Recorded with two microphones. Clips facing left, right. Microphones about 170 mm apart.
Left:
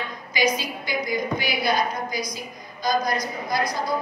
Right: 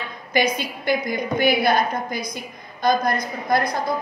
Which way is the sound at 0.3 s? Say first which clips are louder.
Right 2 dB; 55° right (ahead or behind).